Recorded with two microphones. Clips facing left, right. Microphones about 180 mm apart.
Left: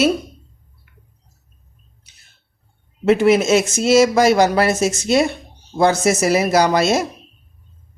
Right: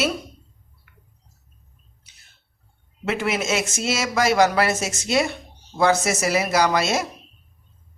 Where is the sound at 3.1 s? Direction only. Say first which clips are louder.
Left 10 dB; 35° left (ahead or behind).